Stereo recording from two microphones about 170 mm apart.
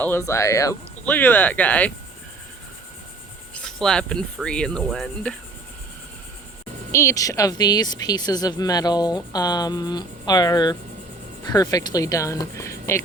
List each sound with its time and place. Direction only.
0.0 s speech: 15° left (ahead or behind)
3.5 s speech: 5° left (ahead or behind)
6.9 s a woman's voice: 20° left (ahead or behind)